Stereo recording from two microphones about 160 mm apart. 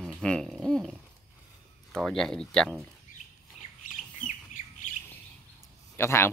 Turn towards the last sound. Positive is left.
turn(degrees=15)  # may be behind; listen again after turning